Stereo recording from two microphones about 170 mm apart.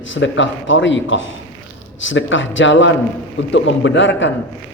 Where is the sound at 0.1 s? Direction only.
90° left.